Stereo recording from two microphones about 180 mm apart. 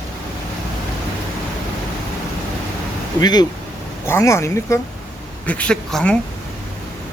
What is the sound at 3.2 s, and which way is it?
Speech, 20° left (ahead or behind).